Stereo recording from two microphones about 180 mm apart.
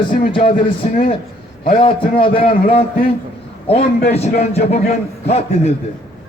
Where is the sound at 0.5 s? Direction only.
50° left (ahead or behind).